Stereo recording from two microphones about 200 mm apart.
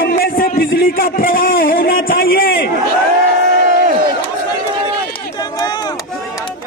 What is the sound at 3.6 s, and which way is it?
Crowd, 40° right (ahead or behind).